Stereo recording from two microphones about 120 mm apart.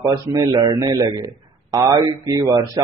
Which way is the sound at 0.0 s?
25° right (ahead or behind).